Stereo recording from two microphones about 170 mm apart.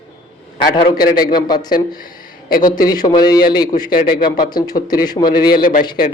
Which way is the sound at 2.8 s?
20° left (ahead or behind).